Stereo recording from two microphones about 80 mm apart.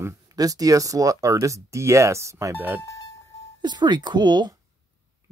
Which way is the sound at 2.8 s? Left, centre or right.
Left.